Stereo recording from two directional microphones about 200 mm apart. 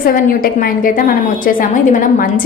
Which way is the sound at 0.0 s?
45° left (ahead or behind).